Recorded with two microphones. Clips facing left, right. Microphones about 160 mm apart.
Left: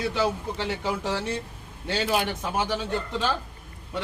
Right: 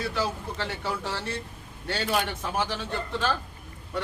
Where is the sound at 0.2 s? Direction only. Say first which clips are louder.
Left 4 dB; 15° left (ahead or behind).